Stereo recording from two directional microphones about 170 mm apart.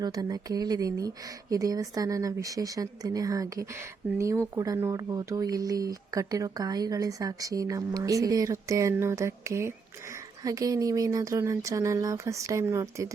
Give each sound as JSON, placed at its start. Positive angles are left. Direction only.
{"t": 0.0, "sound": "speech", "side_deg": -20}